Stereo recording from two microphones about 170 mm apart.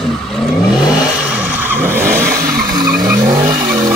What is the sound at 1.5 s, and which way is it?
Vehicle, 10° right (ahead or behind).